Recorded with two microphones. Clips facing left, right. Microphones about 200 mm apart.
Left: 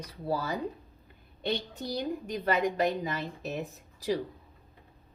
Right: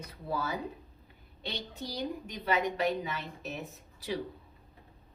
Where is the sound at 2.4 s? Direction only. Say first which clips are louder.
Left 2 dB; 45° left (ahead or behind).